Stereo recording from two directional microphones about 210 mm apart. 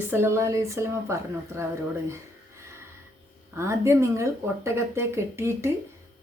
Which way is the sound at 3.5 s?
15° right (ahead or behind).